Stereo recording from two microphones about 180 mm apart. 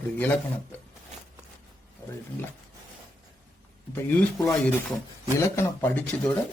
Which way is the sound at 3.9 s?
10° left (ahead or behind).